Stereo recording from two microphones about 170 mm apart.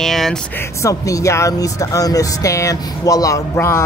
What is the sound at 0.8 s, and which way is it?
A man's voice, 20° left (ahead or behind).